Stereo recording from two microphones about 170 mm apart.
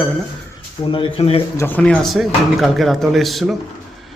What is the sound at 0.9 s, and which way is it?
Speech, 30° left (ahead or behind).